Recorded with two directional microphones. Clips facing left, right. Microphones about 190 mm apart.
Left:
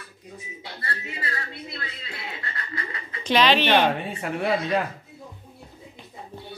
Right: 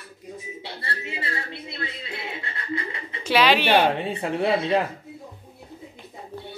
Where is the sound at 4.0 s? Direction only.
25° right (ahead or behind).